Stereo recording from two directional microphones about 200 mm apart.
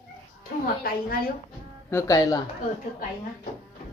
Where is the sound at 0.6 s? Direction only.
45° left (ahead or behind).